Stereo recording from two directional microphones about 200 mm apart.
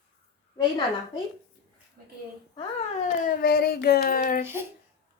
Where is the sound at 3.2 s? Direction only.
50° left (ahead or behind).